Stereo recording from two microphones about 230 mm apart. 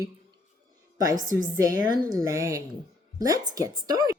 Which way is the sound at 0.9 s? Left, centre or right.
Centre.